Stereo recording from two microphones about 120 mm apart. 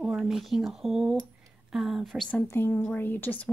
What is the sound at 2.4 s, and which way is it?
Speech, 20° left (ahead or behind).